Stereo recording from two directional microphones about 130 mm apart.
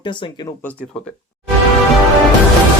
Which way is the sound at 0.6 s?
10° left (ahead or behind).